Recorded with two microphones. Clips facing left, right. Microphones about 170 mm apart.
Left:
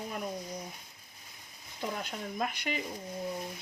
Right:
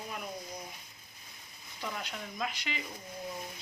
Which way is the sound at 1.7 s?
45° left (ahead or behind).